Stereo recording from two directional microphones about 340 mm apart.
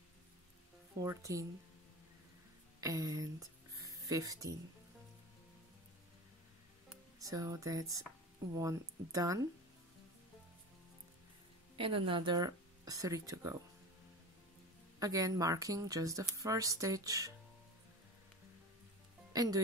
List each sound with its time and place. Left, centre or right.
1.0 s speech: centre
2.8 s speech: centre
6.9 s speech: centre
11.7 s speech: centre
15.0 s speech: centre
19.3 s speech: centre